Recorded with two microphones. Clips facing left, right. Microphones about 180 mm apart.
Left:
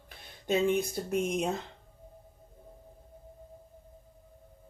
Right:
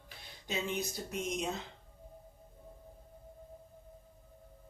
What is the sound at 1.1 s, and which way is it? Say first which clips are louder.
Speech: left 8 dB; 55° left (ahead or behind).